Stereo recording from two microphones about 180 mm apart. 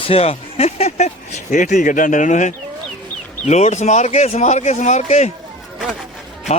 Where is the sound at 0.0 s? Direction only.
35° left (ahead or behind).